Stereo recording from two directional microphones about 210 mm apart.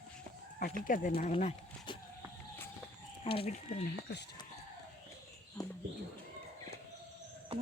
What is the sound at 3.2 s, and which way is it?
Speech, 25° left (ahead or behind).